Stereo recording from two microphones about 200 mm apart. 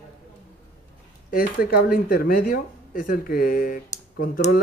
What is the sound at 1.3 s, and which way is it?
Speech, 45° left (ahead or behind).